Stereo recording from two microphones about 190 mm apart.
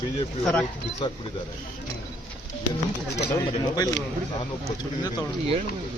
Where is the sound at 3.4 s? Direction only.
20° left (ahead or behind).